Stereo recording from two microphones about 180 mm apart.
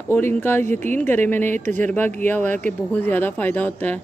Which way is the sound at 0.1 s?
10° left (ahead or behind).